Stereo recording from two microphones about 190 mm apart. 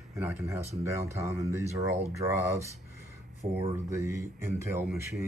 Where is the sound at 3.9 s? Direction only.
15° right (ahead or behind).